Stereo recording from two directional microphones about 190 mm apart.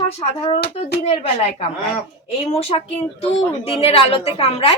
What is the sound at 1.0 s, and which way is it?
Speech, 35° left (ahead or behind).